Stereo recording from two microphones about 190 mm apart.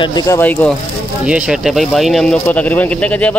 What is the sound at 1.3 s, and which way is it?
Speech, 5° right (ahead or behind).